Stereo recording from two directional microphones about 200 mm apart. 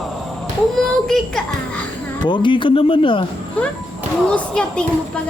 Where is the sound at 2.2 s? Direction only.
25° left (ahead or behind).